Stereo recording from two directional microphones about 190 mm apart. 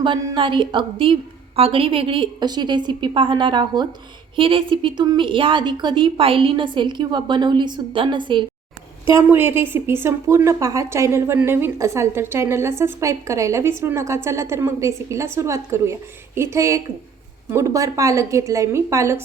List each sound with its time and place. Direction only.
0.0 s a woman's voice: 25° right (ahead or behind)
9.1 s a woman's voice: 10° right (ahead or behind)